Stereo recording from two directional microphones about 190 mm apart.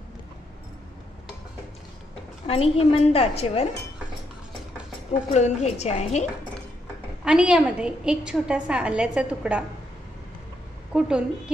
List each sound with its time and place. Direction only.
2.4 s a woman's voice: 30° left (ahead or behind)
5.3 s a woman's voice: 35° left (ahead or behind)
7.2 s a woman's voice: 5° right (ahead or behind)
10.9 s a woman's voice: 5° right (ahead or behind)